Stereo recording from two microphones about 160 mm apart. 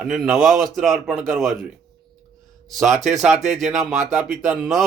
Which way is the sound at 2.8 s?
45° right (ahead or behind).